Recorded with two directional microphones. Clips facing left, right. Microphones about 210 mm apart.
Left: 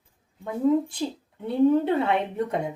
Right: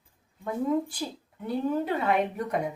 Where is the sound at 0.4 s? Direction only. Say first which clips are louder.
Left 5 dB; 25° left (ahead or behind).